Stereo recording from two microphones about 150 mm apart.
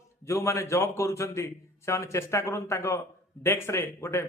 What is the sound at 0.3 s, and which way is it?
A man's voice, 20° left (ahead or behind).